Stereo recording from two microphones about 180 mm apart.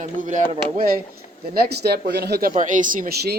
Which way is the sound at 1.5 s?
60° right (ahead or behind).